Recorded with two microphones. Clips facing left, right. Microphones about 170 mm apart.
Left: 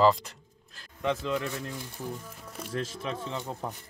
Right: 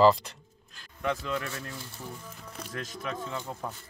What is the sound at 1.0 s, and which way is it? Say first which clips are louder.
Speech: left 2 dB; 20° left (ahead or behind).